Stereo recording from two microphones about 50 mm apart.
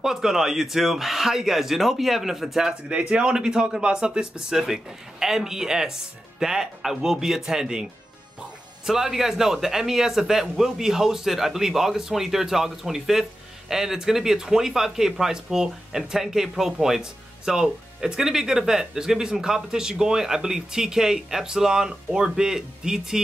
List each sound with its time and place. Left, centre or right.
0.0 s a man's voice: centre
2.9 s a man's voice: right
8.8 s a man's voice: centre